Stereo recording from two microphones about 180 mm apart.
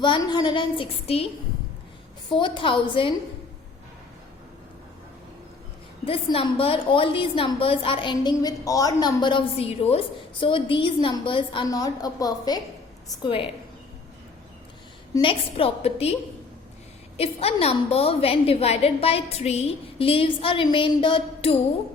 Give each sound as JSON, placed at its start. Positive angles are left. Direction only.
{"t": 0.0, "sound": "a woman's voice", "side_deg": 25}
{"t": 2.3, "sound": "a woman's voice", "side_deg": 30}
{"t": 6.1, "sound": "a woman's voice", "side_deg": 30}
{"t": 15.1, "sound": "a woman's voice", "side_deg": 30}
{"t": 17.2, "sound": "a woman's voice", "side_deg": 35}